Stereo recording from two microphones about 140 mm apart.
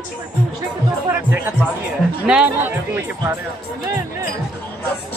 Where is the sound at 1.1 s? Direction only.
15° right (ahead or behind).